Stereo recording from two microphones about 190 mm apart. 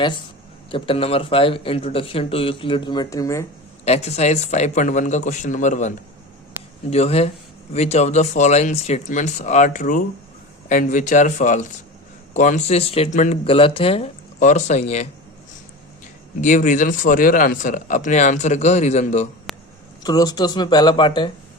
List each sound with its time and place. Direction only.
0.7 s speech: 30° left (ahead or behind)
3.8 s speech: 35° left (ahead or behind)
6.9 s speech: 35° left (ahead or behind)
16.4 s speech: 40° left (ahead or behind)
20.0 s speech: 20° left (ahead or behind)